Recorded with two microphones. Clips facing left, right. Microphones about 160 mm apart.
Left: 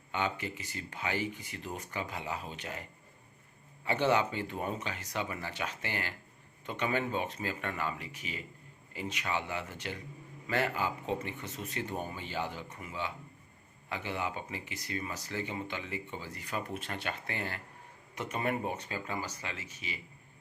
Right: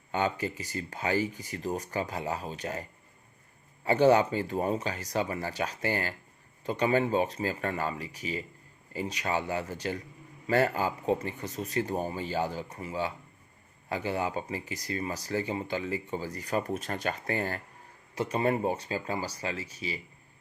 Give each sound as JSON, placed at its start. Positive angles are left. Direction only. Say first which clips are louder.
{"t": 0.1, "sound": "speech", "louder": "right 5 dB", "side_deg": -40}
{"t": 3.8, "sound": "speech", "louder": "right 7 dB", "side_deg": -40}